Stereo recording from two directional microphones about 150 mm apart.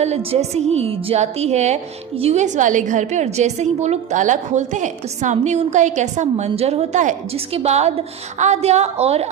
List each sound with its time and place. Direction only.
0.0 s a woman's voice: 45° right (ahead or behind)
7.3 s a woman's voice: 45° right (ahead or behind)